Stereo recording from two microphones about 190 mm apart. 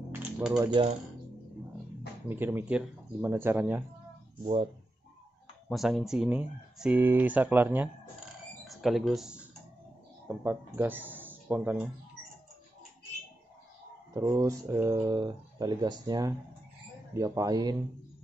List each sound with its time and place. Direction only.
0.1 s a sound: 5° right (ahead or behind)
2.2 s speech: 10° right (ahead or behind)
5.7 s speech: centre (ahead or behind)
14.1 s speech: 15° right (ahead or behind)